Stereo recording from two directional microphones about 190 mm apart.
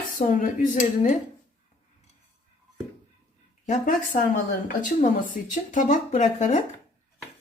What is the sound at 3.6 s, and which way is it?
Speech, 40° left (ahead or behind).